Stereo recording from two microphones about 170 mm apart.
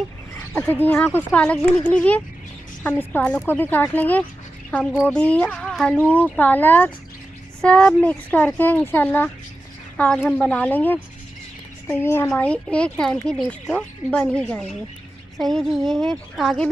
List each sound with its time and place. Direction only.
0.7 s speech: 10° left (ahead or behind)